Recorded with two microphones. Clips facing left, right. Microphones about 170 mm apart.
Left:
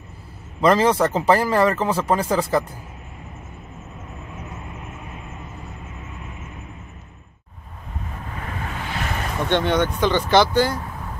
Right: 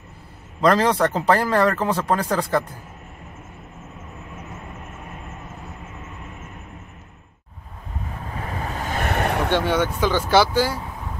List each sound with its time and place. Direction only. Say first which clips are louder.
0.6 s a man's voice: left 1 dB; 5° left (ahead or behind)
8.7 s vehicle: right 5 dB; 45° right (ahead or behind); by 9.5 s 65° right (ahead or behind)
9.5 s speech: left 1 dB; 10° right (ahead or behind)